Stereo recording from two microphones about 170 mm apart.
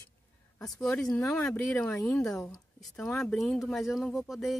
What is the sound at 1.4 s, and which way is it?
Speech, 5° left (ahead or behind).